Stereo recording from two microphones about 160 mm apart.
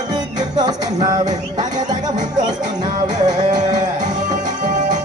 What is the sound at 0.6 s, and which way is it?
Music, 25° right (ahead or behind).